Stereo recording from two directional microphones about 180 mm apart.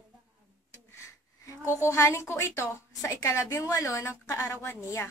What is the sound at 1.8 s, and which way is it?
A woman's voice, 15° left (ahead or behind).